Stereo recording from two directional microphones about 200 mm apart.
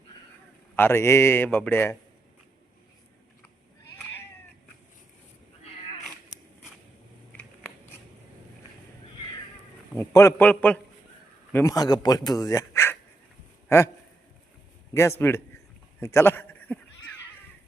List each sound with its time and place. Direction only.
0.8 s a man's voice: 15° left (ahead or behind)
10.0 s a man's voice: 15° left (ahead or behind)
14.9 s a man's voice: 15° left (ahead or behind)
16.0 s a sound: 15° left (ahead or behind)